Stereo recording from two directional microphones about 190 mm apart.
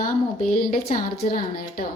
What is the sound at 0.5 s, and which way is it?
A woman's voice, 50° left (ahead or behind).